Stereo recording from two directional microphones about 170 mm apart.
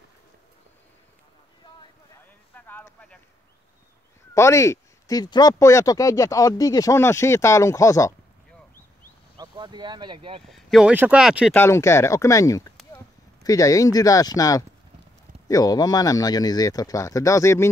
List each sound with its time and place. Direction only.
2.5 s a sound: 10° left (ahead or behind)
4.3 s speech: 15° left (ahead or behind)
9.4 s speech: 25° right (ahead or behind)
10.5 s speech: centre (ahead or behind)
11.5 s speech: 15° left (ahead or behind)